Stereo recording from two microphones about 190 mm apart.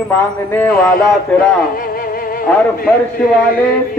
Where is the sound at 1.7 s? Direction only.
50° left (ahead or behind).